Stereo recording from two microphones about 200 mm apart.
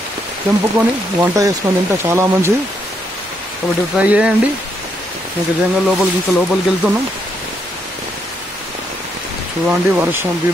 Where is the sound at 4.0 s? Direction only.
5° right (ahead or behind).